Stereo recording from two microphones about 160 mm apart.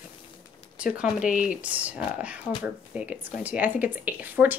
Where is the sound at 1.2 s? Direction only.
55° left (ahead or behind).